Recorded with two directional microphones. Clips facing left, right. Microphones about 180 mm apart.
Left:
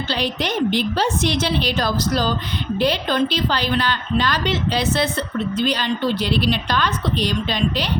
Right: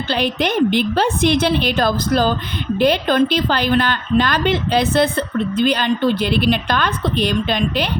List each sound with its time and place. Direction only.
0.1 s a woman's voice: 55° right (ahead or behind)